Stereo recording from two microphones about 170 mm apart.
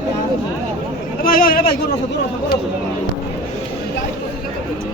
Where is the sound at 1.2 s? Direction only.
60° left (ahead or behind).